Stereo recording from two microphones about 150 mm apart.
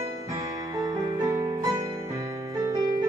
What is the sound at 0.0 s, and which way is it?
Music, 20° right (ahead or behind).